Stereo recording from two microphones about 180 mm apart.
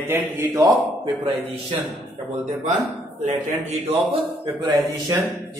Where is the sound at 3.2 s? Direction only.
35° right (ahead or behind).